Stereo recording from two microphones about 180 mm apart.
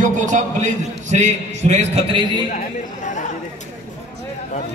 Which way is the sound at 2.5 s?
45° left (ahead or behind).